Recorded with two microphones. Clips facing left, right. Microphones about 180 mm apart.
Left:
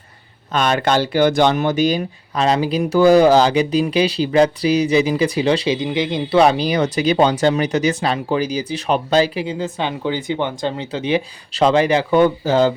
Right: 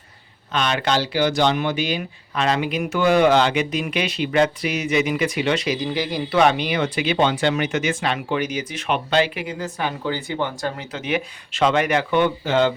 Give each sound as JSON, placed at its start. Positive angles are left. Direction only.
{"t": 0.5, "sound": "speech", "side_deg": 45}
{"t": 6.4, "sound": "speech", "side_deg": 35}